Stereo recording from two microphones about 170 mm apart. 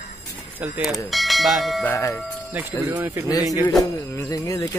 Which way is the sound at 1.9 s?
15° left (ahead or behind).